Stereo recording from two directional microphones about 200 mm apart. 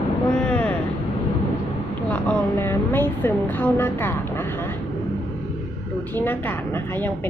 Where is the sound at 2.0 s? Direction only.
5° left (ahead or behind).